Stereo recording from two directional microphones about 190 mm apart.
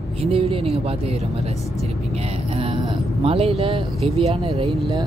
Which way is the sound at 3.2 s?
30° right (ahead or behind).